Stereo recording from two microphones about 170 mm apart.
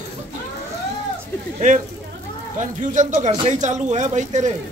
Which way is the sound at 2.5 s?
45° right (ahead or behind).